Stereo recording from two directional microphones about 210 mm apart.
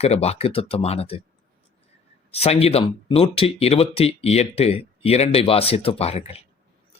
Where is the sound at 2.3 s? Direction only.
30° left (ahead or behind).